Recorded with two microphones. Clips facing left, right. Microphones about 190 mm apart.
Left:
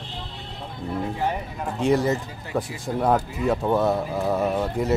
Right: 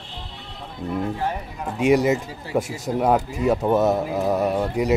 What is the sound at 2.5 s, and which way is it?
Speech, 25° right (ahead or behind).